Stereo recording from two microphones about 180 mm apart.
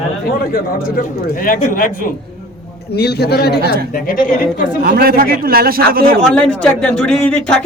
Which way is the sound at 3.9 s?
50° left (ahead or behind).